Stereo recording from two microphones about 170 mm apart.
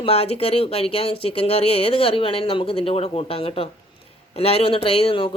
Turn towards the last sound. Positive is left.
turn(degrees=35)  # may be behind; listen again after turning